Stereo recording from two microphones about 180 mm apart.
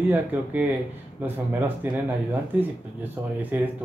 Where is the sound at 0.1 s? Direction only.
10° right (ahead or behind).